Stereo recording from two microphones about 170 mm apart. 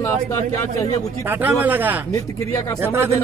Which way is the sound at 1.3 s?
10° right (ahead or behind).